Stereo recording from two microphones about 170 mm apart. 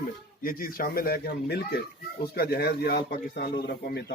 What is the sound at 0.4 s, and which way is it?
A man's voice, 60° left (ahead or behind).